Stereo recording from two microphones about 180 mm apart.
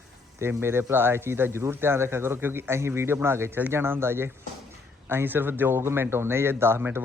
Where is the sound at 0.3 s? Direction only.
15° right (ahead or behind).